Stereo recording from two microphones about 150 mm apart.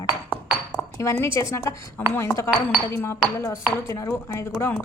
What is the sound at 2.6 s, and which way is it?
Chink, 15° left (ahead or behind).